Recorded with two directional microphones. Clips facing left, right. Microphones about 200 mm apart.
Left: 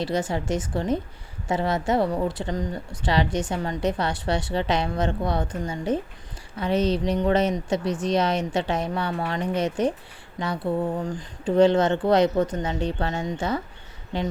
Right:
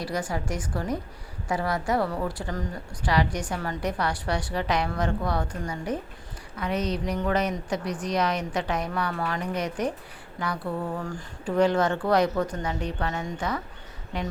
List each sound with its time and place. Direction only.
0.0 s speech: 25° left (ahead or behind)